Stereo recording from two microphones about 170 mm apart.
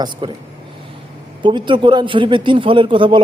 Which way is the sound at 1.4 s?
30° right (ahead or behind).